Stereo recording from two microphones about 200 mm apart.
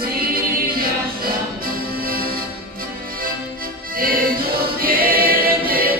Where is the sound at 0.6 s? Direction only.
45° right (ahead or behind).